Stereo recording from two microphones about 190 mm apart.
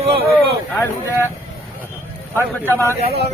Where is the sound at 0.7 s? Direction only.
10° left (ahead or behind).